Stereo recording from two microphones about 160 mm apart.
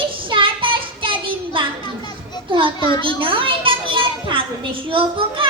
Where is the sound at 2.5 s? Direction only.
30° right (ahead or behind).